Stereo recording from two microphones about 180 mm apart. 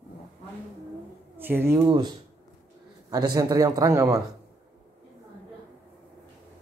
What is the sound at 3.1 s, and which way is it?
Speech, 20° right (ahead or behind).